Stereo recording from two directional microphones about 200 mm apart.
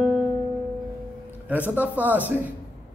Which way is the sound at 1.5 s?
5° right (ahead or behind).